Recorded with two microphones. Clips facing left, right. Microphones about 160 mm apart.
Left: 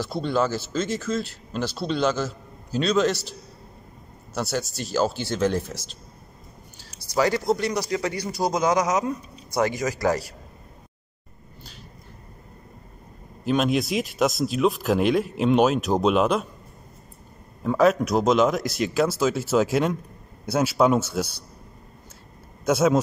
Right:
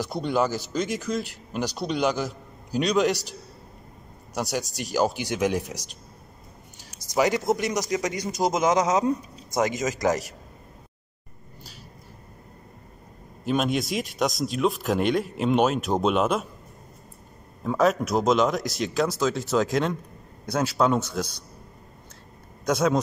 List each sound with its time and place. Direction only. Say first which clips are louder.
0.0 s a man's voice: left 1 dB; 15° right (ahead or behind)
13.4 s speech: left 2 dB; centre (ahead or behind)
17.6 s speech: left 3 dB; centre (ahead or behind)
22.7 s speech: left 3 dB; 5° left (ahead or behind)